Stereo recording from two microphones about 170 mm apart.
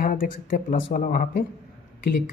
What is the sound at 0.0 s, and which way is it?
Speech, 55° left (ahead or behind).